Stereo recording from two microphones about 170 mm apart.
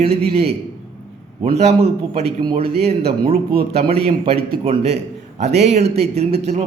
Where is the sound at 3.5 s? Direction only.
65° right (ahead or behind).